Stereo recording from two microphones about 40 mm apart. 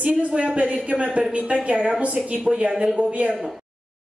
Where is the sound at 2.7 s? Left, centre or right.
Centre.